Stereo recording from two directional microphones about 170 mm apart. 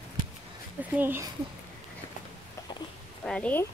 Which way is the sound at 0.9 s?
10° right (ahead or behind).